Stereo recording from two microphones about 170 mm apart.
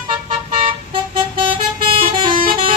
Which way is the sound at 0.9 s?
30° right (ahead or behind).